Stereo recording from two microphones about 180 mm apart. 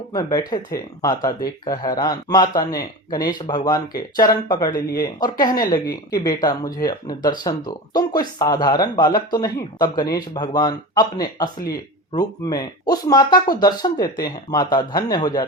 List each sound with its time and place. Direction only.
0.1 s speech: 20° left (ahead or behind)
5.6 s a woman's voice: 55° left (ahead or behind)
6.1 s speech: 20° left (ahead or behind)